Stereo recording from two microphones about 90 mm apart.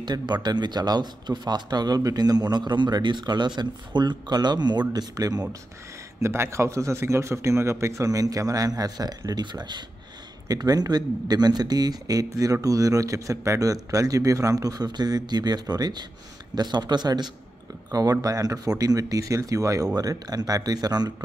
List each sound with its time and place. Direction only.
0.0 s speech: 50° right (ahead or behind)
6.2 s a man's voice: 30° right (ahead or behind); by 17.3 s 50° right (ahead or behind)
18.1 s a man's voice: 40° right (ahead or behind)